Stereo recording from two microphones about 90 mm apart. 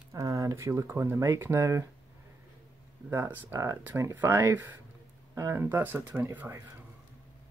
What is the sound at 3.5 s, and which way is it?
Speech, 30° right (ahead or behind).